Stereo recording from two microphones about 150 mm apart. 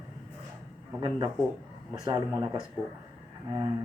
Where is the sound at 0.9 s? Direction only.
25° right (ahead or behind).